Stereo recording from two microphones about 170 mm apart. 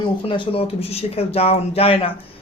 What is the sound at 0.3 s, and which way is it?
A woman's voice, 35° left (ahead or behind).